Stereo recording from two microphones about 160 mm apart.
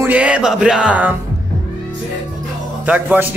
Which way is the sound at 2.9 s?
10° right (ahead or behind).